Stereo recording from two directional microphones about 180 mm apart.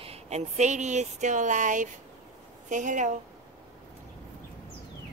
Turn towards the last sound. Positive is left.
turn(degrees=-45)  # may be behind; listen again after turning